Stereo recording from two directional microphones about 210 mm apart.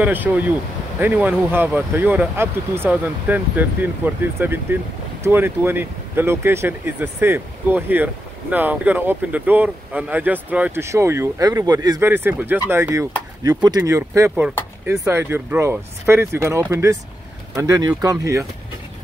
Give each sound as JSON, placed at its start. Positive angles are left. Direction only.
{"t": 0.0, "sound": "speech", "side_deg": -10}